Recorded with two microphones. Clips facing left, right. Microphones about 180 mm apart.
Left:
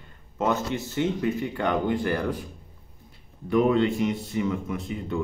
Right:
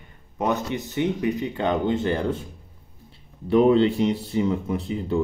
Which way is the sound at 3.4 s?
30° right (ahead or behind).